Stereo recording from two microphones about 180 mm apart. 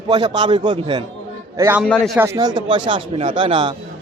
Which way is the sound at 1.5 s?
10° right (ahead or behind).